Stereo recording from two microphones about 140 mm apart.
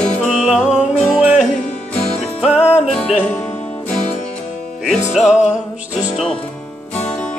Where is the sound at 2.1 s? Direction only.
Centre (ahead or behind).